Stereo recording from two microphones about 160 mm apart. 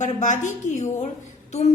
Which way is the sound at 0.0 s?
50° left (ahead or behind).